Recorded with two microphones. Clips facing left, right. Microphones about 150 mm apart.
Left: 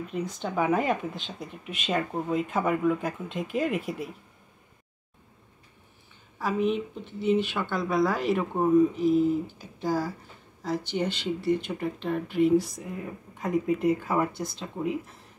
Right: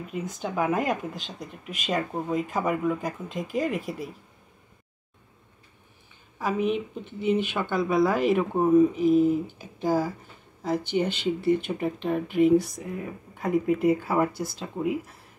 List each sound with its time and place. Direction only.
0.4 s speech: 5° right (ahead or behind)
6.6 s speech: 5° right (ahead or behind)
9.0 s speech: 55° right (ahead or behind)
9.8 s speech: 20° right (ahead or behind)
10.6 s speech: centre (ahead or behind)